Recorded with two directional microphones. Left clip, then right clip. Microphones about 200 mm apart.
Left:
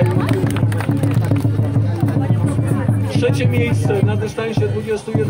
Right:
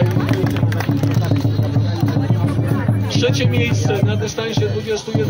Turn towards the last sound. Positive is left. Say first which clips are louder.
# even
turn(degrees=10)  # may be behind; listen again after turning